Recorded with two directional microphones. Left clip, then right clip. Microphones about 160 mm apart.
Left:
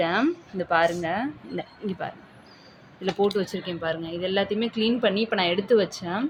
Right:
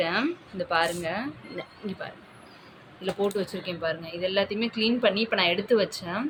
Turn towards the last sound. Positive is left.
turn(degrees=40)  # may be behind; listen again after turning